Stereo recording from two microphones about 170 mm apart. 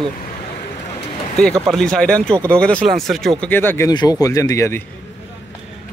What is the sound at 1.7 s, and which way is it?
Speech, 5° left (ahead or behind).